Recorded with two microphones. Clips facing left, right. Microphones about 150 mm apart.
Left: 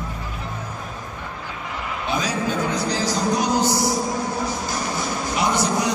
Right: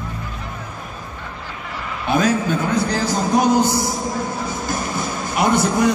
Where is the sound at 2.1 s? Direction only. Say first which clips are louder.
Right 6 dB; 55° right (ahead or behind).